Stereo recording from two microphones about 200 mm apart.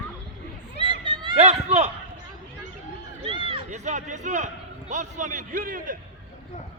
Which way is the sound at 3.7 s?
35° right (ahead or behind).